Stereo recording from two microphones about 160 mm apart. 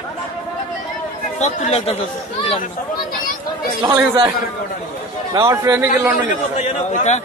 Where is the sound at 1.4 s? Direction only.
45° left (ahead or behind).